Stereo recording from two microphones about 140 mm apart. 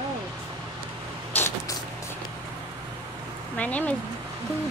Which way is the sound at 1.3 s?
20° left (ahead or behind).